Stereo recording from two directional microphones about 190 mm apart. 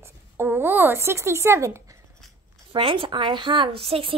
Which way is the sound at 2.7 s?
25° right (ahead or behind).